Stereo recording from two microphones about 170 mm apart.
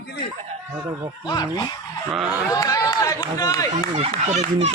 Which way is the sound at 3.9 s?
40° right (ahead or behind).